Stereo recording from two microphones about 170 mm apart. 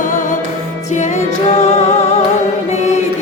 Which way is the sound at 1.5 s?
40° left (ahead or behind).